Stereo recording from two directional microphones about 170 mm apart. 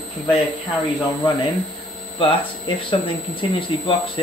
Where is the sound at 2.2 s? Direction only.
30° left (ahead or behind).